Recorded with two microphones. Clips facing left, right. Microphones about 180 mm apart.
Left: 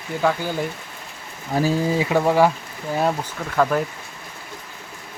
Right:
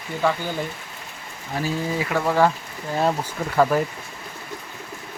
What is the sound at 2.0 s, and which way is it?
Speech, 20° left (ahead or behind).